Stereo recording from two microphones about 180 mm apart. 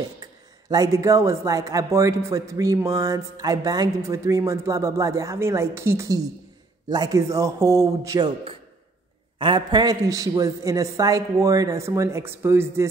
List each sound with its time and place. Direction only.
0.2 s speech: 20° right (ahead or behind)
9.4 s a woman's voice: 25° right (ahead or behind)